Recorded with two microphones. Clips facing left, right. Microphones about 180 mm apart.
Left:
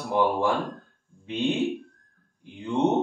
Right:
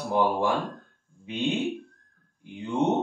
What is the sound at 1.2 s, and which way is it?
Speech, 15° right (ahead or behind).